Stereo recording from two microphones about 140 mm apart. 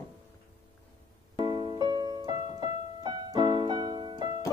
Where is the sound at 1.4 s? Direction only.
35° right (ahead or behind).